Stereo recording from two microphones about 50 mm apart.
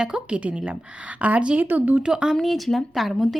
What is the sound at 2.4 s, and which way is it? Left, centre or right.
Speech, centre.